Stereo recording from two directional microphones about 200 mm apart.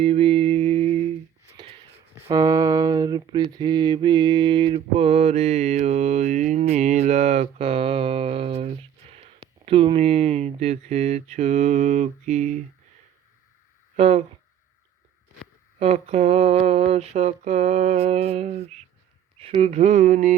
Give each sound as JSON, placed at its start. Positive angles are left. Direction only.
{"t": 0.0, "sound": "mantra", "side_deg": -30}
{"t": 2.1, "sound": "a sound", "side_deg": -15}
{"t": 9.6, "sound": "mantra", "side_deg": -30}
{"t": 13.9, "sound": "speech", "side_deg": -35}
{"t": 15.8, "sound": "mantra", "side_deg": -30}